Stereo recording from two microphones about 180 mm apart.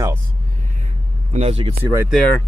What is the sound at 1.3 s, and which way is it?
Speech, 35° right (ahead or behind).